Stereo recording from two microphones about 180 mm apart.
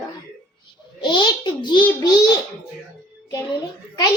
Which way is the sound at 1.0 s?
25° left (ahead or behind).